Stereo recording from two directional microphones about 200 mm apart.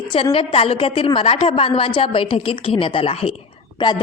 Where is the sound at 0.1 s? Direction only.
25° left (ahead or behind).